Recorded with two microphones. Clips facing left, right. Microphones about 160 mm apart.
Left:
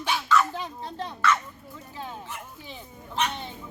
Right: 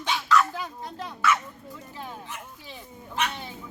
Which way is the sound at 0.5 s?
30° left (ahead or behind).